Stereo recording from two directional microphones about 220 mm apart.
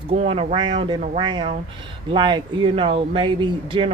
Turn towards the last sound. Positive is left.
turn(degrees=-25)  # may be behind; listen again after turning